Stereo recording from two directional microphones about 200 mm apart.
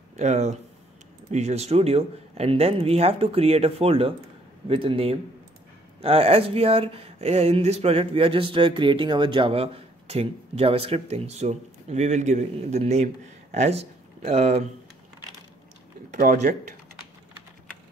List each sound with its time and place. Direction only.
0.2 s speech: 35° right (ahead or behind)
16.1 s speech: 40° right (ahead or behind)